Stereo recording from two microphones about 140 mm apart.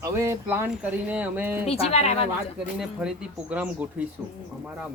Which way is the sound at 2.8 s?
5° right (ahead or behind).